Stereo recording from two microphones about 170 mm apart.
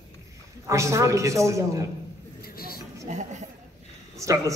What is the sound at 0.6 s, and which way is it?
A man's voice, 15° right (ahead or behind).